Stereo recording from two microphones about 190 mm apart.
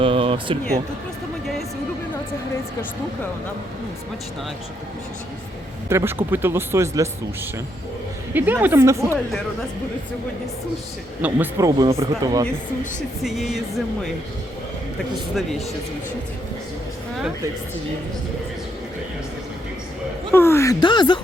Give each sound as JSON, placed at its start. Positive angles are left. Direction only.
{"t": 0.0, "sound": "a sound", "side_deg": -30}
{"t": 5.9, "sound": "speech", "side_deg": -15}
{"t": 8.3, "sound": "speech", "side_deg": -10}
{"t": 11.2, "sound": "speech", "side_deg": -15}
{"t": 13.2, "sound": "speech", "side_deg": 0}
{"t": 15.4, "sound": "speech", "side_deg": 0}
{"t": 20.3, "sound": "a sound", "side_deg": 15}